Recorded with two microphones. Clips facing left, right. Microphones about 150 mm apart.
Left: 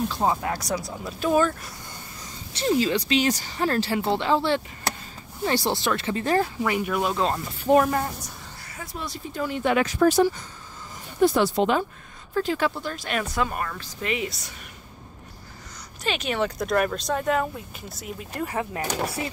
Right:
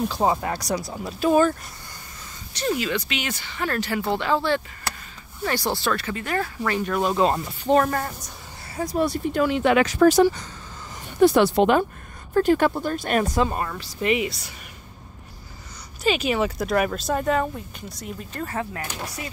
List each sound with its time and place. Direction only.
0.1 s speech: centre (ahead or behind)
2.5 s speech: 25° left (ahead or behind)
6.6 s speech: 10° left (ahead or behind)
8.9 s speech: 65° right (ahead or behind); by 10.4 s 85° right
11.1 s speech: 70° right (ahead or behind); by 13.4 s 45° right (ahead or behind)
13.4 s a woman's voice: 25° right (ahead or behind)
13.7 s a woman's voice: 15° right (ahead or behind)
16.0 s speech: 5° right (ahead or behind); by 18.9 s 15° left (ahead or behind)